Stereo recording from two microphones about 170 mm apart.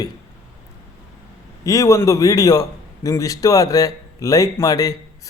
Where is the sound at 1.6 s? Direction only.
20° left (ahead or behind).